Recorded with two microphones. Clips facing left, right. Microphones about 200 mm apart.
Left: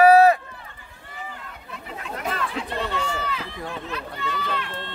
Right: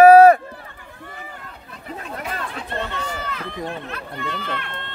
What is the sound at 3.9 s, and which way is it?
Speech, 55° right (ahead or behind).